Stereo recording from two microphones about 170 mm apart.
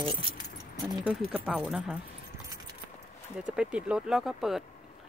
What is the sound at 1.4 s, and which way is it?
Speech, 10° right (ahead or behind).